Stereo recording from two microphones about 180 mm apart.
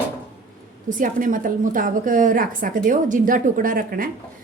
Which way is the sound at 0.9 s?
45° right (ahead or behind).